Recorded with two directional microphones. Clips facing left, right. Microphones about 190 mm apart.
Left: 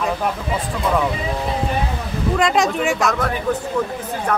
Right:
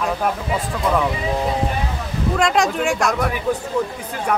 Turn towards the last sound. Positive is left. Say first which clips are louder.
# even
turn(degrees=0)  # may be behind; listen again after turning